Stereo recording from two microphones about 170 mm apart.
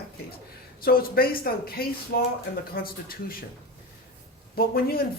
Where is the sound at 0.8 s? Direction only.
60° left (ahead or behind).